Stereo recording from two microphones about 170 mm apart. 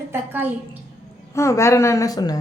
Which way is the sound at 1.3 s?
15° left (ahead or behind).